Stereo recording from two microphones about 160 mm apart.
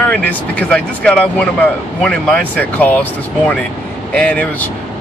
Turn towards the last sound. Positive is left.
turn(degrees=10)  # may be behind; listen again after turning